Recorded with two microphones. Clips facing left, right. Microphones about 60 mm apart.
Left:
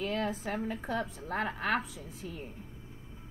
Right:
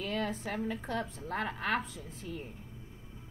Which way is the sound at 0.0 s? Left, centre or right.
Centre.